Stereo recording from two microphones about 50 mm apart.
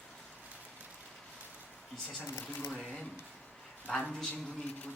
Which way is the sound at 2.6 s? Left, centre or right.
Centre.